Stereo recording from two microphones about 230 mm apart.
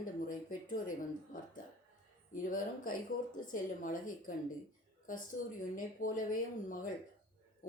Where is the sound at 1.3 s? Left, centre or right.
Left.